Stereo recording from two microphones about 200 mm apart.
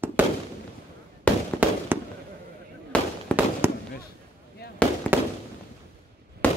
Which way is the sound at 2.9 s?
5° left (ahead or behind).